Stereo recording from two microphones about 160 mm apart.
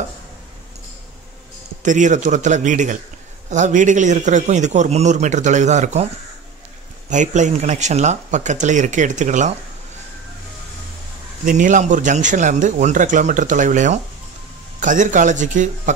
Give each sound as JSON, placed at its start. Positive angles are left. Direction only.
{"t": 1.8, "sound": "a man's voice", "side_deg": -50}
{"t": 7.1, "sound": "a man's voice", "side_deg": -50}
{"t": 11.4, "sound": "a man's voice", "side_deg": -55}